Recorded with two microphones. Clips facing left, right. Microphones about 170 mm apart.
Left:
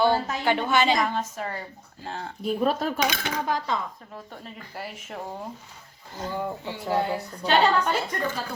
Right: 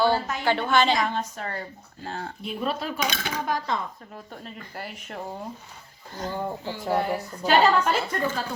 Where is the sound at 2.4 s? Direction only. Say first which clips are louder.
Left 6 dB; 45° left (ahead or behind).